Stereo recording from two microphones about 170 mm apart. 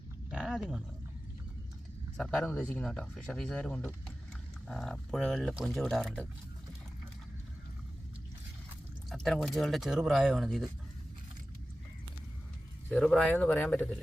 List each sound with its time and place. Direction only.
0.3 s dog: 5° right (ahead or behind)
2.1 s speech: 5° left (ahead or behind)
9.0 s speech: centre (ahead or behind)
12.9 s speech: 5° left (ahead or behind)